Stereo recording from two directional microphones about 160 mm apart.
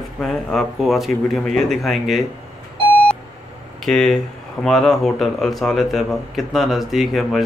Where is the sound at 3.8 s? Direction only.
Centre (ahead or behind).